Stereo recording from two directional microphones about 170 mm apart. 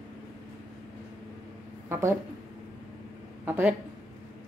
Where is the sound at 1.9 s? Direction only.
15° right (ahead or behind).